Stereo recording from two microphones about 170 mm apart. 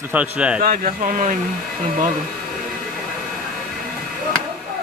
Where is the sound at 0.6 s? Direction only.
55° right (ahead or behind).